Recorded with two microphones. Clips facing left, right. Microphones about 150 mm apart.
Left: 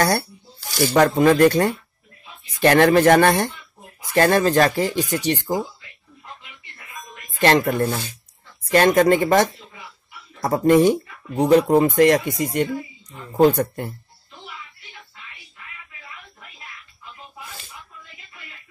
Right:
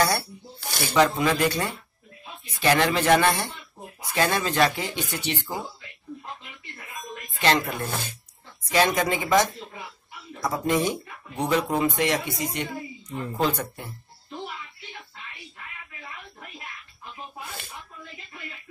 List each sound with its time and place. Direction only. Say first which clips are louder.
0.7 s speech: left 5 dB; 50° left (ahead or behind)
7.3 s speech: left 7 dB; 50° left (ahead or behind)